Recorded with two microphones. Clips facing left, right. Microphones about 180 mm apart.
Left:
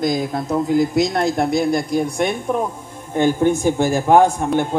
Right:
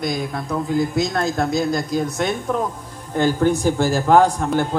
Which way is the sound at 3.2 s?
20° left (ahead or behind).